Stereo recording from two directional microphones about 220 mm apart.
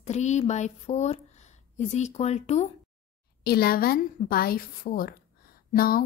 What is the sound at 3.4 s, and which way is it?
A woman's voice, 45° left (ahead or behind).